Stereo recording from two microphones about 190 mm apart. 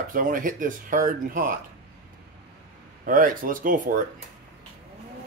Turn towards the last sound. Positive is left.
turn(degrees=-45)  # may be behind; listen again after turning